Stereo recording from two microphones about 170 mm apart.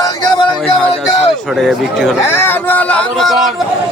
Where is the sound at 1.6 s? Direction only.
Centre (ahead or behind).